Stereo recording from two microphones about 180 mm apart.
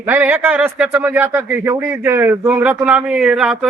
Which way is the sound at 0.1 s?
10° right (ahead or behind).